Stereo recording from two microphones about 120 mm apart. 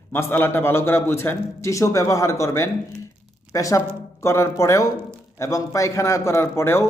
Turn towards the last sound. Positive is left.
turn(degrees=20)  # may be behind; listen again after turning